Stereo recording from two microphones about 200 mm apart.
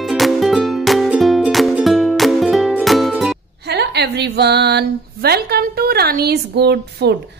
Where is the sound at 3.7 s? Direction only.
55° right (ahead or behind).